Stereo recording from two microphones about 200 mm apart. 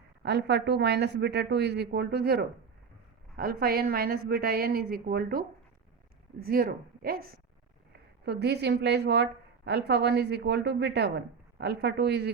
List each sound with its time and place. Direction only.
0.2 s a woman's voice: 55° right (ahead or behind)